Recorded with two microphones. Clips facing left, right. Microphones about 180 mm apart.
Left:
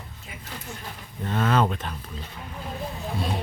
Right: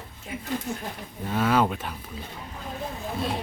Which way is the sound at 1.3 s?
10° right (ahead or behind).